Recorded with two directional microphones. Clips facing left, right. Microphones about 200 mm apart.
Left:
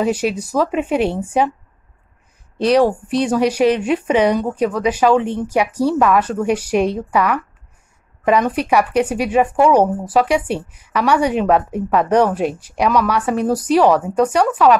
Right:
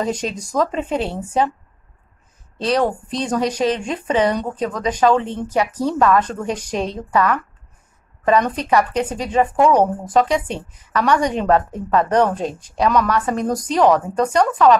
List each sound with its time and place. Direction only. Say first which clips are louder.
0.0 s speech: left 5 dB; 10° left (ahead or behind)
2.6 s speech: left 5 dB; 10° left (ahead or behind)